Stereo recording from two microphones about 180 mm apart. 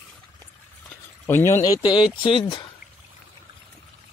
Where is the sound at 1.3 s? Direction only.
15° left (ahead or behind).